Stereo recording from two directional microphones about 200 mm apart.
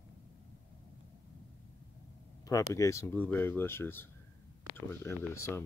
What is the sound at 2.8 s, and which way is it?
Speech, 15° left (ahead or behind).